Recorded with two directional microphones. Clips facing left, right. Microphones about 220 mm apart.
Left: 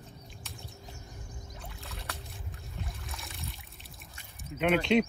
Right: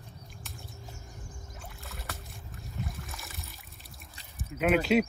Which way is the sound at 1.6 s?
Centre (ahead or behind).